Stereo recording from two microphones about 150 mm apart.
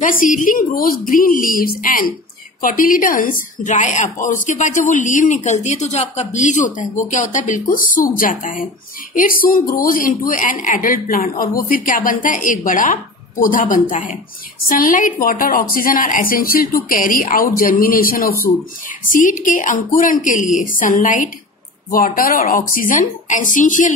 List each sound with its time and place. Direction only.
0.0 s a woman's voice: 65° left (ahead or behind)
19.1 s a woman's voice: 60° left (ahead or behind)